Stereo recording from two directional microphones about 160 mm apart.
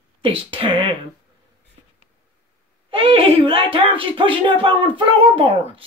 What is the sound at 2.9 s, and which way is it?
Speech, 35° right (ahead or behind).